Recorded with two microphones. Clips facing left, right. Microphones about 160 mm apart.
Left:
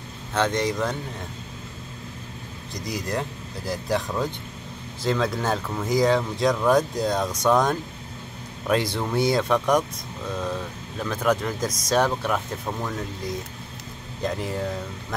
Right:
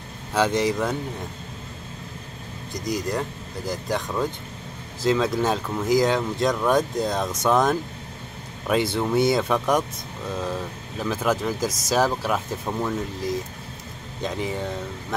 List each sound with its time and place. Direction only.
0.3 s speech: 5° right (ahead or behind)
2.7 s speech: centre (ahead or behind)
11.0 s speech: 5° right (ahead or behind)